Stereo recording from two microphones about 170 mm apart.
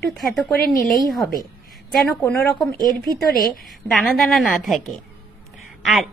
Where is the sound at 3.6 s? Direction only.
Centre (ahead or behind).